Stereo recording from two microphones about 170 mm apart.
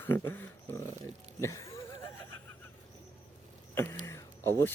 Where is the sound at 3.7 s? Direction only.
15° left (ahead or behind).